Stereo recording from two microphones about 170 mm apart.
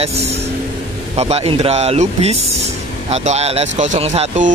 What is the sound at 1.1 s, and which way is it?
Speech, 35° right (ahead or behind).